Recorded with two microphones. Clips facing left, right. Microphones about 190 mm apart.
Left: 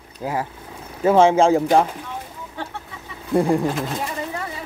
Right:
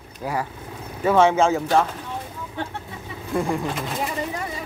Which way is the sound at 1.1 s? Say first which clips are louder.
Left 3 dB; 30° left (ahead or behind).